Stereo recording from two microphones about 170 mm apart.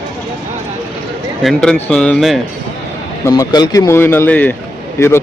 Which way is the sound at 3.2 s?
20° left (ahead or behind).